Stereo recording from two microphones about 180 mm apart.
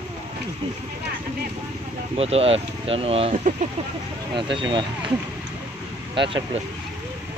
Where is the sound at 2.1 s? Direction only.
35° right (ahead or behind).